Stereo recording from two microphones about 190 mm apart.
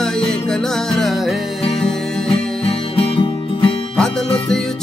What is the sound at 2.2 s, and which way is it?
Music, 30° left (ahead or behind).